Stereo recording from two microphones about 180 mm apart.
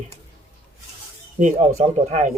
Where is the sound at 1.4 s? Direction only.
40° right (ahead or behind).